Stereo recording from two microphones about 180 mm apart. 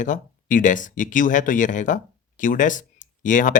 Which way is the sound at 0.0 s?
45° left (ahead or behind).